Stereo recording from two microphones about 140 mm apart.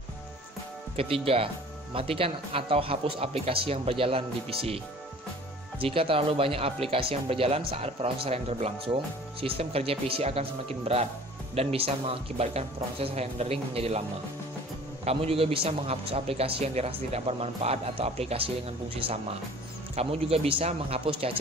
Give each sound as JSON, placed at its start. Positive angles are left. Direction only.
{"t": 0.9, "sound": "a man's voice", "side_deg": -40}
{"t": 15.0, "sound": "a man's voice", "side_deg": -45}
{"t": 20.0, "sound": "a man's voice", "side_deg": -45}